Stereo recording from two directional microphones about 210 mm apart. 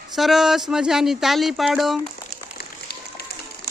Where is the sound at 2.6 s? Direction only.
50° left (ahead or behind).